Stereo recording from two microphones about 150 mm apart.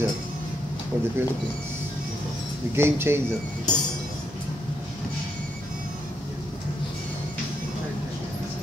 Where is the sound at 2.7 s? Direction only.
15° right (ahead or behind).